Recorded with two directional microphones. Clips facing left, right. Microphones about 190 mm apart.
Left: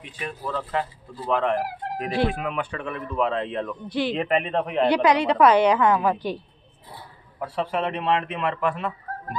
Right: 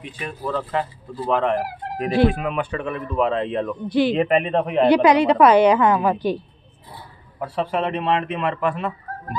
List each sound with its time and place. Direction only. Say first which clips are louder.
0.2 s speech: right 3 dB; 40° right (ahead or behind); by 6.3 s 10° right (ahead or behind)
7.3 s a man's voice: right 3 dB; 30° right (ahead or behind)